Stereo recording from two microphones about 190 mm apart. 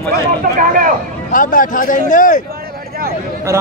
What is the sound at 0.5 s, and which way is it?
Speech, 45° right (ahead or behind).